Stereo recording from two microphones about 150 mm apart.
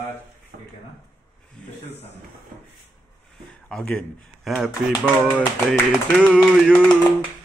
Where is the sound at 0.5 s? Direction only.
90° right.